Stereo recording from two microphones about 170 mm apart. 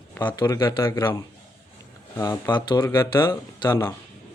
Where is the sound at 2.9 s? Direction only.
15° left (ahead or behind).